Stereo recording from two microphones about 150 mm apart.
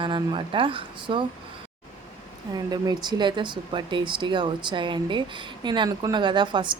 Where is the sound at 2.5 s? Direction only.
25° right (ahead or behind).